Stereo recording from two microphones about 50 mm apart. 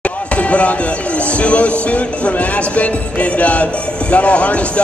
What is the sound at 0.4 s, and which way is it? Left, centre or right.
Music, left.